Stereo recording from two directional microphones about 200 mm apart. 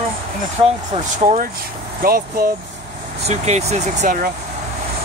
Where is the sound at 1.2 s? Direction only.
40° right (ahead or behind).